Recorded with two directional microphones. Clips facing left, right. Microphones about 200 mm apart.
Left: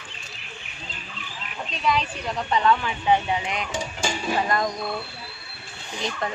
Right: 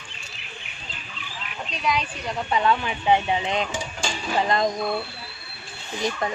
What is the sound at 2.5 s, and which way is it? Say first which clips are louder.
Speech: left 1 dB; 15° right (ahead or behind).